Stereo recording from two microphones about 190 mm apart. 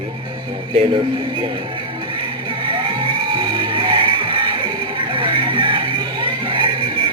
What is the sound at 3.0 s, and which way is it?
Music, 25° right (ahead or behind).